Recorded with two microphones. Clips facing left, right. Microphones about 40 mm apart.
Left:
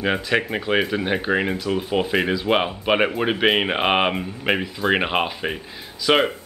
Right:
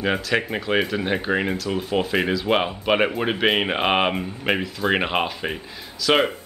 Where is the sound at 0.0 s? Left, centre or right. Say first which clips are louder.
Left 1 dB; centre.